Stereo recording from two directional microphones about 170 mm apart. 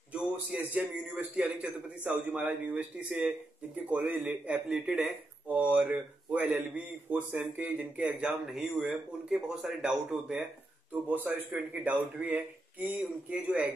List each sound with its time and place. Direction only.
0.1 s speech: 10° right (ahead or behind)